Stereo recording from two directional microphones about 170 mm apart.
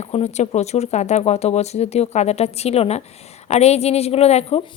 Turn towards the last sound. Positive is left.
turn(degrees=40)  # may be behind; listen again after turning